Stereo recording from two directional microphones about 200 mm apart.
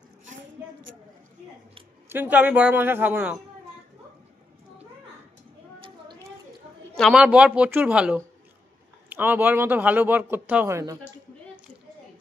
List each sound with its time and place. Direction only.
2.0 s speech: 10° right (ahead or behind)
5.8 s a sound: 25° right (ahead or behind)
7.0 s speech: 5° right (ahead or behind)